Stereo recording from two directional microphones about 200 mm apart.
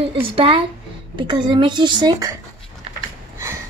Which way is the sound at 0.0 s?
25° right (ahead or behind).